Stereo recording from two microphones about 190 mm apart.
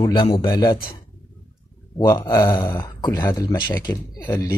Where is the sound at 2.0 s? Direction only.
20° left (ahead or behind).